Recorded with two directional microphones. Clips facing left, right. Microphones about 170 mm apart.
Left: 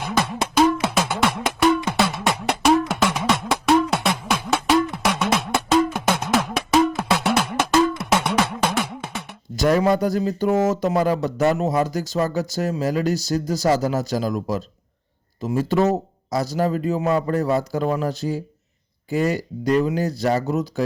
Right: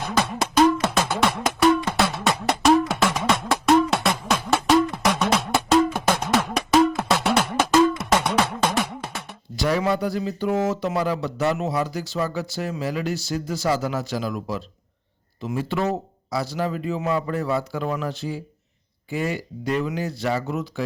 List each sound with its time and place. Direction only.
0.0 s music: 5° left (ahead or behind)
9.6 s a man's voice: 45° left (ahead or behind)